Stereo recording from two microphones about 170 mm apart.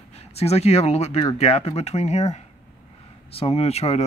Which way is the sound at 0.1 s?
35° left (ahead or behind).